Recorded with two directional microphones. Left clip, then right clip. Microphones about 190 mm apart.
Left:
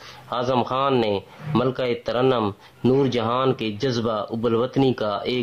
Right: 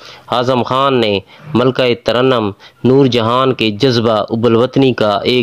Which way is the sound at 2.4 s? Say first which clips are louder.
Right 7 dB; 20° right (ahead or behind).